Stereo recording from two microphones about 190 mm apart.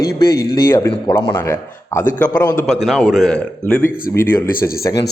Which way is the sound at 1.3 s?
15° left (ahead or behind).